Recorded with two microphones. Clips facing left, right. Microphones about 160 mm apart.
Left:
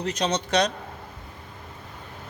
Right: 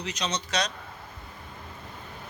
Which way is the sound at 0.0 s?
55° left (ahead or behind).